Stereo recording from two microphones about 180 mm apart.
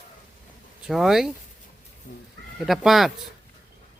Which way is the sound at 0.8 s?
Centre (ahead or behind).